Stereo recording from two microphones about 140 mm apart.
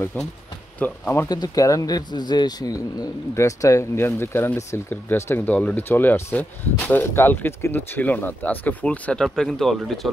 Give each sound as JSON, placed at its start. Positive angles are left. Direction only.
{"t": 0.7, "sound": "speech", "side_deg": 15}
{"t": 1.3, "sound": "speech", "side_deg": 25}